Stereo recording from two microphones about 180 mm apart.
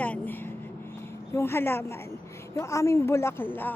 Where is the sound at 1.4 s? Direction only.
15° left (ahead or behind).